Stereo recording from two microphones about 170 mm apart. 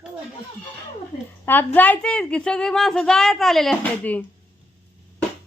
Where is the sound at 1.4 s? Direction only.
10° left (ahead or behind).